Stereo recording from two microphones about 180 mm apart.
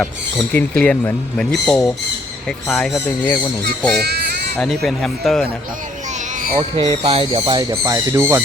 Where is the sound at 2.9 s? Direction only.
20° left (ahead or behind).